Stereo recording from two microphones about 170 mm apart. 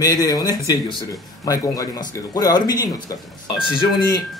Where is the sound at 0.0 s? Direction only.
20° left (ahead or behind).